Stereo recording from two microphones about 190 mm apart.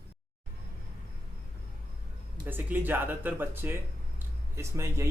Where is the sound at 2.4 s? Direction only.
10° right (ahead or behind).